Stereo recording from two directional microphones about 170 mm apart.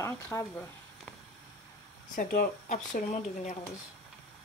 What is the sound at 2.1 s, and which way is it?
Speech, 55° left (ahead or behind).